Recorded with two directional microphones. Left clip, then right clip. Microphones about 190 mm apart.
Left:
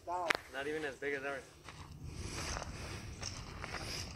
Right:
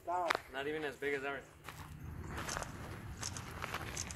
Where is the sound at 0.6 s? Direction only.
55° right (ahead or behind).